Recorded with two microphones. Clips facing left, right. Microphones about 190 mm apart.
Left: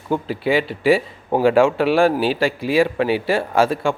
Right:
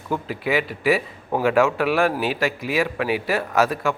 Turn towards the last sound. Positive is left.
turn(degrees=30)  # may be behind; listen again after turning